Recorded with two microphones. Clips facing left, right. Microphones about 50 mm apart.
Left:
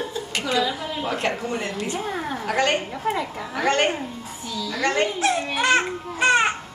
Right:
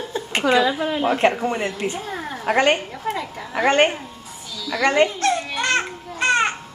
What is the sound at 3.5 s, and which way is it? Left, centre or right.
Speech, right.